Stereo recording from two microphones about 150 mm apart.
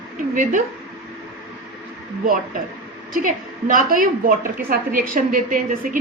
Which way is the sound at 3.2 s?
65° right (ahead or behind).